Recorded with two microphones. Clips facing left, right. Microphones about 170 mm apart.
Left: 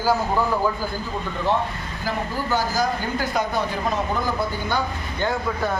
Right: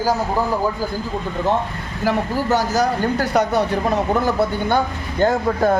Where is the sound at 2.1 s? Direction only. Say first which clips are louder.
Right 6 dB; 75° right (ahead or behind).